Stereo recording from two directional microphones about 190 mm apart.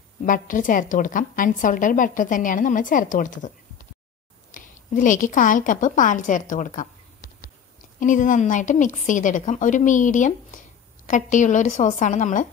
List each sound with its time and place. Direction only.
0.2 s a woman's voice: 45° left (ahead or behind)
8.0 s a woman's voice: 45° left (ahead or behind)